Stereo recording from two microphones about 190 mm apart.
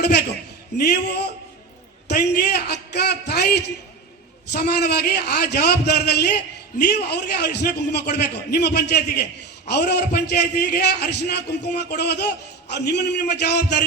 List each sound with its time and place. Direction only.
0.0 s a man's voice: 60° left (ahead or behind)